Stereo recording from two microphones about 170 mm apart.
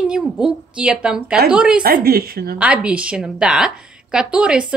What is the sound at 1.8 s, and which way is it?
Speech, 60° right (ahead or behind).